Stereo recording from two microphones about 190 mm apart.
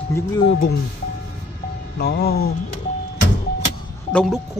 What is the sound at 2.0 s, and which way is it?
Music, 55° left (ahead or behind).